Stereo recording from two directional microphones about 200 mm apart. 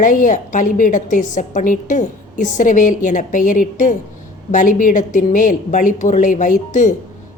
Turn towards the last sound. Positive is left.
turn(degrees=40)  # may be behind; listen again after turning